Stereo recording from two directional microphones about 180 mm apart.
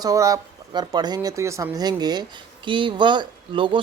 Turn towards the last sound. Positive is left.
turn(degrees=-25)  # may be behind; listen again after turning